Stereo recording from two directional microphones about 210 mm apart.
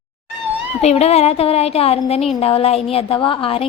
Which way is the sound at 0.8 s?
30° left (ahead or behind).